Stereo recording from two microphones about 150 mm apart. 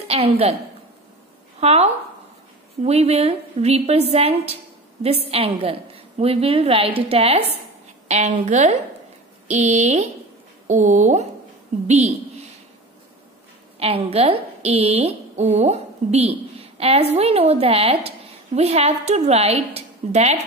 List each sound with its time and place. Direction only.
0.1 s a woman's voice: 45° right (ahead or behind)
1.6 s a woman's voice: 45° right (ahead or behind)
13.7 s a woman's voice: 40° right (ahead or behind)